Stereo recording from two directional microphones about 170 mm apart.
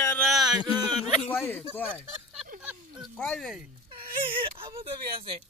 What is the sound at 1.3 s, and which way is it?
Speech, 10° left (ahead or behind).